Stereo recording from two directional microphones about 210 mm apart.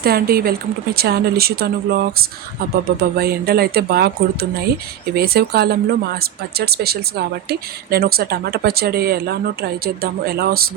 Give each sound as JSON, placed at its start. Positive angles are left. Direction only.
{"t": 0.0, "sound": "speech", "side_deg": -45}